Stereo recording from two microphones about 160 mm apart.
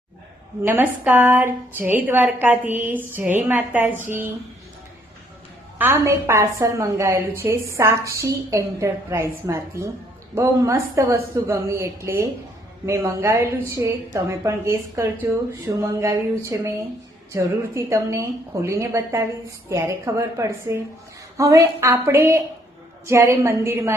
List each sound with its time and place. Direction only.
0.6 s a woman's voice: 10° right (ahead or behind)
5.8 s a woman's voice: 15° right (ahead or behind)